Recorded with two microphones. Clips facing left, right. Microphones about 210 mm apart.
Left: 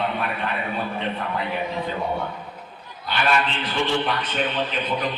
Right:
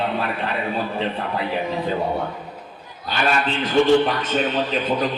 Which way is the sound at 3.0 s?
40° right (ahead or behind).